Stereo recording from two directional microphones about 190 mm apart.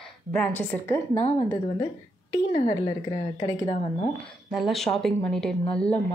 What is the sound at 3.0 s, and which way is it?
Speech, 25° left (ahead or behind).